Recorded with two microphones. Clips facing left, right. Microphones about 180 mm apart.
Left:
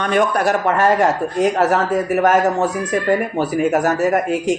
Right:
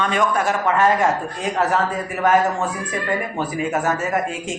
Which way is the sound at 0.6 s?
40° left (ahead or behind).